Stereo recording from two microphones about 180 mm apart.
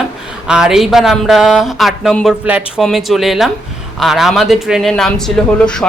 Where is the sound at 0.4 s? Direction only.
5° right (ahead or behind).